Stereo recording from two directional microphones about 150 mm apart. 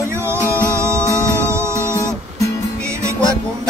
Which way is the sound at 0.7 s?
20° right (ahead or behind).